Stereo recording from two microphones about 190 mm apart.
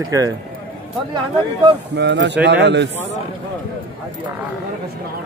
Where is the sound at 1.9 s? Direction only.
65° right (ahead or behind).